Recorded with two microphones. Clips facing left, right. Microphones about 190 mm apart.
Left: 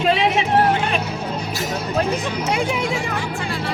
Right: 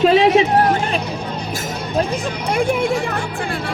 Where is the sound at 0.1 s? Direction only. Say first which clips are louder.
Right 5 dB; 40° right (ahead or behind).